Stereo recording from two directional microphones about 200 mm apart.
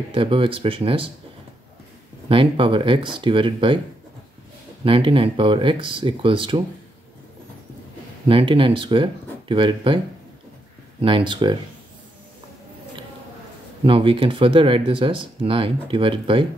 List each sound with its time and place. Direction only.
0.1 s speech: 25° right (ahead or behind)
2.2 s speech: 25° right (ahead or behind)
4.8 s speech: 25° right (ahead or behind)
8.3 s speech: 25° right (ahead or behind)
11.0 s speech: 25° right (ahead or behind)
13.8 s speech: 25° right (ahead or behind)